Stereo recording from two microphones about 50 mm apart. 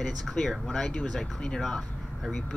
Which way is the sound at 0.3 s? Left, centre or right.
Centre.